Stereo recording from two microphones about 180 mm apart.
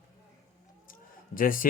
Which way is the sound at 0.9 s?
50° left (ahead or behind).